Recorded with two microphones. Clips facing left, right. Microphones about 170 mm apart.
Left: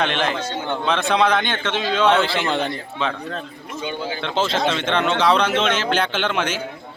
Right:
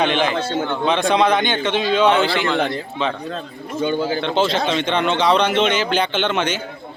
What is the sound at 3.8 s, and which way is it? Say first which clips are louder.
Speech: right 7 dB; 45° right (ahead or behind).